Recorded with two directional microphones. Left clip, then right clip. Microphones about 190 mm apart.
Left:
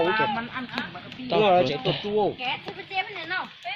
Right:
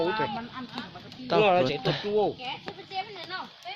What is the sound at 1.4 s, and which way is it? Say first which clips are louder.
Speech: left 4 dB; 50° right (ahead or behind).